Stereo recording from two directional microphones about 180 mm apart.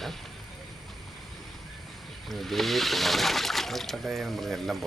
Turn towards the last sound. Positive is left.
turn(degrees=0)  # may be behind; listen again after turning